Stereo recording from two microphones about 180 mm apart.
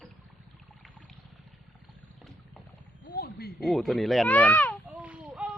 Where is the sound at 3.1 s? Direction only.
60° left (ahead or behind).